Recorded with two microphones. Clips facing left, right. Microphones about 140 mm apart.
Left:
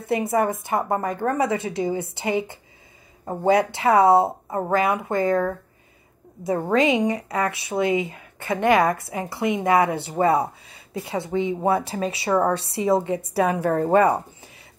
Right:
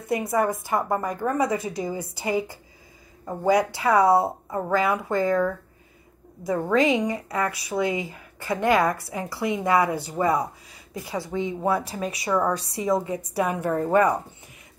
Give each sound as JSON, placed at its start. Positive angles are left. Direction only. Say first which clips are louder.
{"t": 0.0, "sound": "speech", "louder": "left 2 dB", "side_deg": 25}
{"t": 6.4, "sound": "speech", "louder": "left 1 dB", "side_deg": 25}
{"t": 13.4, "sound": "a woman's voice", "louder": "left 3 dB", "side_deg": 85}
{"t": 13.8, "sound": "speech", "louder": "left 2 dB", "side_deg": 30}